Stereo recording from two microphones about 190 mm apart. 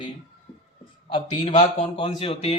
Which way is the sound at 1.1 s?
35° left (ahead or behind).